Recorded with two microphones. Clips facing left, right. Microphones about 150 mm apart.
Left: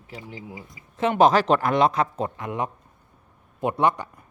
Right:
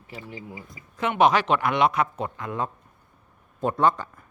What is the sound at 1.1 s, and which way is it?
A man's voice, 40° left (ahead or behind).